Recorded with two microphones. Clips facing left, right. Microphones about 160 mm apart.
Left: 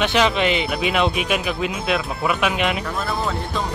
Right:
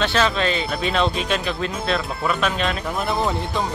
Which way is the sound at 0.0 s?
15° left (ahead or behind).